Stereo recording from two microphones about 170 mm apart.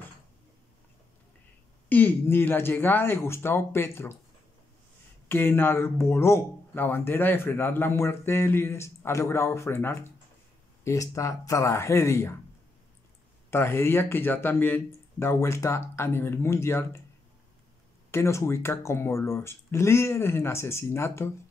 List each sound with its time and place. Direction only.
1.9 s speech: 10° left (ahead or behind)
5.3 s speech: 10° left (ahead or behind)
13.5 s speech: 15° left (ahead or behind)
18.1 s speech: 15° left (ahead or behind)